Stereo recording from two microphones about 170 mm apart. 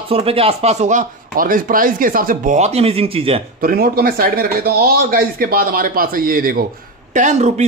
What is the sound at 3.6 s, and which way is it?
Speech, 60° right (ahead or behind).